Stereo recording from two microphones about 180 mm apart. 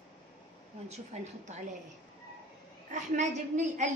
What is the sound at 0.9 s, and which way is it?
Speech, 40° right (ahead or behind).